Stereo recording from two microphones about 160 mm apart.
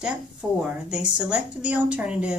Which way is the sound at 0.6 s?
5° right (ahead or behind).